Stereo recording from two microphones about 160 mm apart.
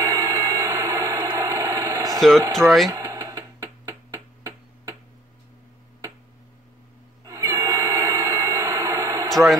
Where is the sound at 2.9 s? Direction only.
20° right (ahead or behind).